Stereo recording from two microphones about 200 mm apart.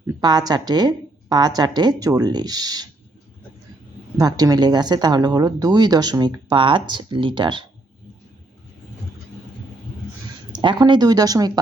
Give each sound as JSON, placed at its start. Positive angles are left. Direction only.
{"t": 0.2, "sound": "speech", "side_deg": -20}
{"t": 4.2, "sound": "speech", "side_deg": -20}
{"t": 10.5, "sound": "speech", "side_deg": -25}